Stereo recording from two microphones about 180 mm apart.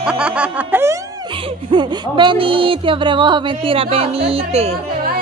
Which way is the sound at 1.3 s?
30° right (ahead or behind).